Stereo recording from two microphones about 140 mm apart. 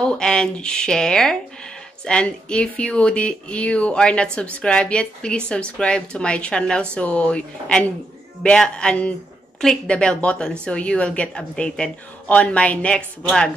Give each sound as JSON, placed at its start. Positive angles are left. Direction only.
{"t": 0.0, "sound": "speech", "side_deg": 5}